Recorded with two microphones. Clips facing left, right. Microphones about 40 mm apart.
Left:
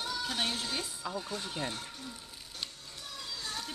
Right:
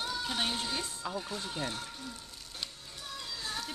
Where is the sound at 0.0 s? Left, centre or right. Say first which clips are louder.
Even; centre.